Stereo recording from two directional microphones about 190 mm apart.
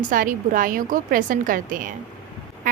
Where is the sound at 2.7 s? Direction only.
45° right (ahead or behind).